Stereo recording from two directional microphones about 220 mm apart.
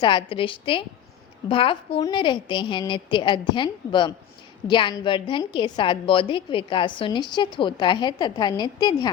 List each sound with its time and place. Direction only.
0.0 s a woman's voice: 25° left (ahead or behind)